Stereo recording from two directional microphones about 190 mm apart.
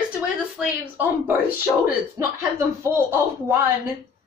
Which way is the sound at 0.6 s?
10° right (ahead or behind).